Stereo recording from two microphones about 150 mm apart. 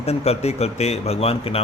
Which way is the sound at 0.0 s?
45° left (ahead or behind).